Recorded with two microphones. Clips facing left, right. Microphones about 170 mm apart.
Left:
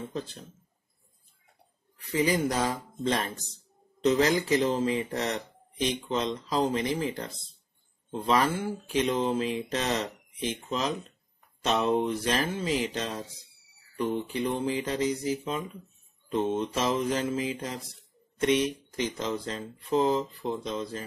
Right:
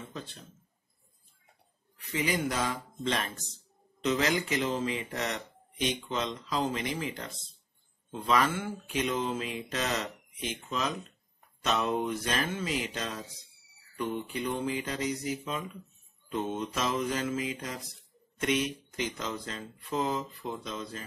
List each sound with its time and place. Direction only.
2.0 s speech: 35° left (ahead or behind)